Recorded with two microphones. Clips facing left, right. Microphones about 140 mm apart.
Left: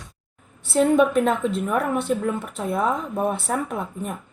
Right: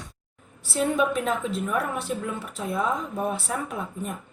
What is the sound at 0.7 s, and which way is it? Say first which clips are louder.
A woman's voice: left 6 dB; 55° left (ahead or behind).